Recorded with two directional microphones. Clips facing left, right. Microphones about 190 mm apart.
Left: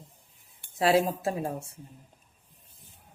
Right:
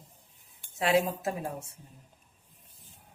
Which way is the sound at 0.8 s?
35° left (ahead or behind).